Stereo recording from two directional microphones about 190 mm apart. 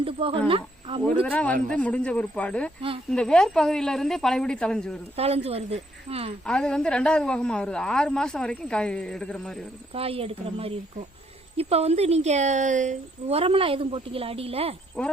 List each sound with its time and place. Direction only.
0.0 s speech: 30° right (ahead or behind)
1.2 s a man's voice: 10° left (ahead or behind)
5.1 s a woman's voice: 30° right (ahead or behind)
6.4 s a woman's voice: 5° left (ahead or behind)
9.9 s a woman's voice: 30° right (ahead or behind)